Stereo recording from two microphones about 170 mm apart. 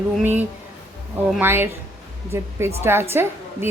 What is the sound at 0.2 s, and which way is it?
A woman's voice, 10° right (ahead or behind).